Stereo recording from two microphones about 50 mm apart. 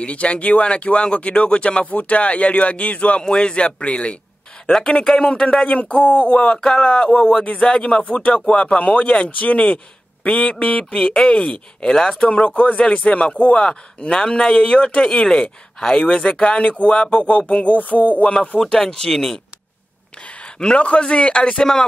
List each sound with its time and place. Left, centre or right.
0.0 s speech: left
5.7 s speech: left
6.9 s a sound: left
7.2 s speech: centre
7.4 s speech: left
12.2 s speech: left
17.5 s a sound: left
18.6 s speech: centre
20.2 s a man's voice: centre